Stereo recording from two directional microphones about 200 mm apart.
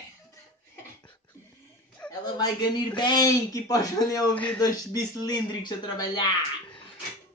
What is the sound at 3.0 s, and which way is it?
Speech, 20° left (ahead or behind).